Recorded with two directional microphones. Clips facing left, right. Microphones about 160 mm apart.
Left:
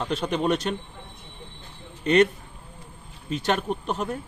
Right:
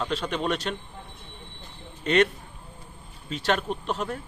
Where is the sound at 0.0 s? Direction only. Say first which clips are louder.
Left 3 dB; 20° left (ahead or behind).